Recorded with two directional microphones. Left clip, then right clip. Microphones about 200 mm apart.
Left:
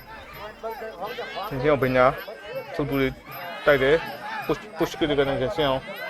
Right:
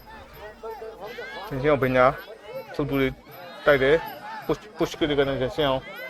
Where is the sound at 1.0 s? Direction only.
45° right (ahead or behind).